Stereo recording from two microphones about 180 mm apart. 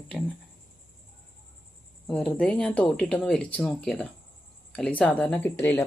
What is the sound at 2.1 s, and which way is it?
Speech, 5° left (ahead or behind).